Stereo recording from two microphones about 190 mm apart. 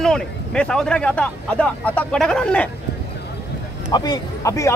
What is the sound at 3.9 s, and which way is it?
Speech, 20° left (ahead or behind).